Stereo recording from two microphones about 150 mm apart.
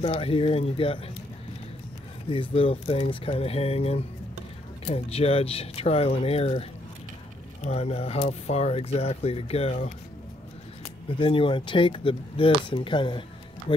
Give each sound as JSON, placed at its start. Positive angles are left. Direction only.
{"t": 0.0, "sound": "speech", "side_deg": 40}
{"t": 2.5, "sound": "speech", "side_deg": 40}
{"t": 11.1, "sound": "speech", "side_deg": 35}